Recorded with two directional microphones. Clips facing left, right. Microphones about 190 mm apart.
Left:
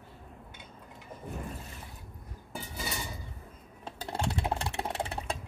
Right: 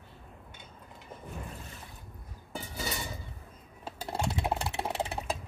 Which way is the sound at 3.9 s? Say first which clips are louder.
Even; 5° right (ahead or behind).